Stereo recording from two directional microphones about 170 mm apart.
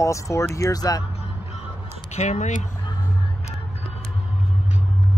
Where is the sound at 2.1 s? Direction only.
45° left (ahead or behind).